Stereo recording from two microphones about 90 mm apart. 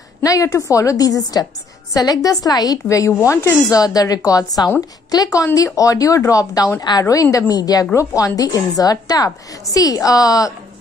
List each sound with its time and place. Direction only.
0.2 s a woman's voice: 40° left (ahead or behind)
3.8 s a woman's voice: 45° left (ahead or behind)